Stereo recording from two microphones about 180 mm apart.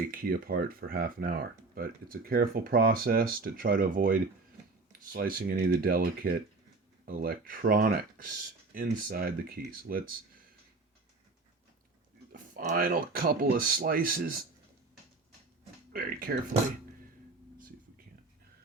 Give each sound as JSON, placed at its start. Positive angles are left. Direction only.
{"t": 0.1, "sound": "speech", "side_deg": -55}
{"t": 12.3, "sound": "speech", "side_deg": -50}
{"t": 15.9, "sound": "speech", "side_deg": -55}